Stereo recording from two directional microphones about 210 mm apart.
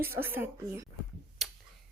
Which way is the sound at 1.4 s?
Centre (ahead or behind).